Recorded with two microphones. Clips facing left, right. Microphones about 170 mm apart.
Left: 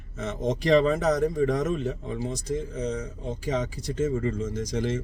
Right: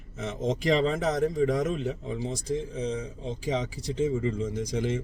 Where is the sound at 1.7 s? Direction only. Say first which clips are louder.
Left 2 dB; 15° right (ahead or behind).